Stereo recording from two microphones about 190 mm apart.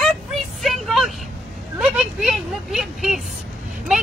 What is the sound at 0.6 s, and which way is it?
Vehicle, centre (ahead or behind).